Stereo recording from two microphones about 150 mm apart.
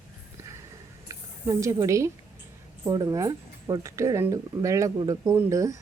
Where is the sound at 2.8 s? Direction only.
25° right (ahead or behind).